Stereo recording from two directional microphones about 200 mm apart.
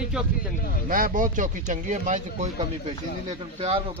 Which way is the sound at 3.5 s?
30° right (ahead or behind).